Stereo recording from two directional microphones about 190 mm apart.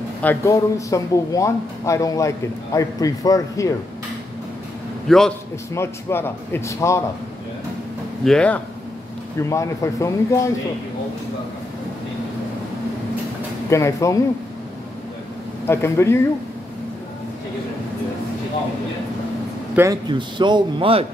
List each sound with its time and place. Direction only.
0.2 s speech: 15° left (ahead or behind)
5.0 s a man's voice: centre (ahead or behind)
5.8 s speech: 15° left (ahead or behind)
8.2 s speech: 5° left (ahead or behind)
13.7 s speech: 15° left (ahead or behind)
15.6 s speech: 15° left (ahead or behind)
19.7 s a man's voice: 15° right (ahead or behind)
20.1 s a man's voice: 25° right (ahead or behind)